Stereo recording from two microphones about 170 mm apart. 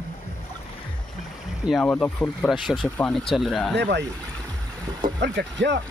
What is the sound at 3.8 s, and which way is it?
Speech, 90° right.